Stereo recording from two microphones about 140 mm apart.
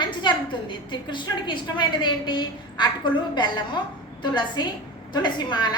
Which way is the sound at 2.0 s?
30° left (ahead or behind).